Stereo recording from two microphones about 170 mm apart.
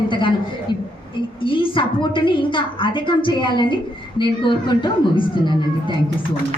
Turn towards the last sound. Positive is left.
turn(degrees=30)  # may be behind; listen again after turning